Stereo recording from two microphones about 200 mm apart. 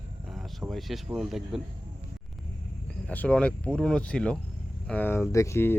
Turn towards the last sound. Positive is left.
turn(degrees=15)  # may be behind; listen again after turning